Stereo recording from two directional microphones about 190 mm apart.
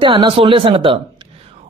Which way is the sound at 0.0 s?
25° right (ahead or behind).